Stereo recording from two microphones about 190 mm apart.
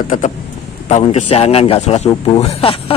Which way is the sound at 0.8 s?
35° left (ahead or behind).